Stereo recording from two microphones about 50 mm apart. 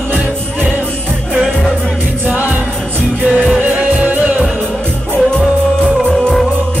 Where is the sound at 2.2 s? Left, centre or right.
Right.